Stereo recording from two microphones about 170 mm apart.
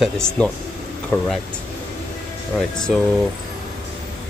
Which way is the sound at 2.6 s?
5° left (ahead or behind).